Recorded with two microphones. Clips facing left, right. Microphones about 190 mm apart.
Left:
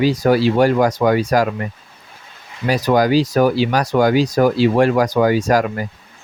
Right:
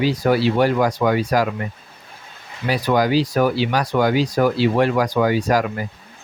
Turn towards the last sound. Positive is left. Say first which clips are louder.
# left 3 dB
turn(degrees=45)  # may be behind; listen again after turning